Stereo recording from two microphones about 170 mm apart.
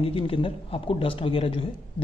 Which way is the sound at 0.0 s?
30° left (ahead or behind).